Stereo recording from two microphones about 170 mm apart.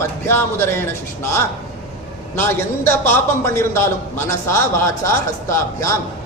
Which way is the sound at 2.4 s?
15° left (ahead or behind).